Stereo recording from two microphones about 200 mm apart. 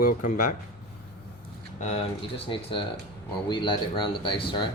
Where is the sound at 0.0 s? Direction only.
40° left (ahead or behind).